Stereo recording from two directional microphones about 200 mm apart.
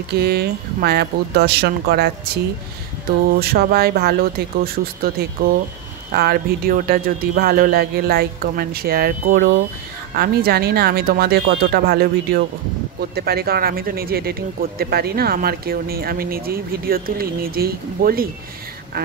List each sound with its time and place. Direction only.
0.1 s speech: 55° right (ahead or behind)
3.3 s speech: 50° right (ahead or behind)
6.1 s speech: 50° right (ahead or behind)